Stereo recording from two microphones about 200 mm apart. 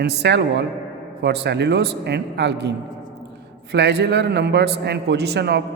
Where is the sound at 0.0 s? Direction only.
60° right (ahead or behind).